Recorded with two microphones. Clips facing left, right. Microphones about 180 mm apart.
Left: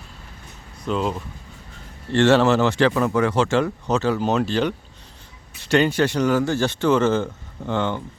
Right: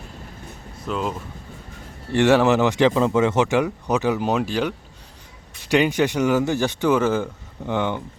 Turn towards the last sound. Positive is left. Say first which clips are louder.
# even
turn(degrees=-15)  # may be behind; listen again after turning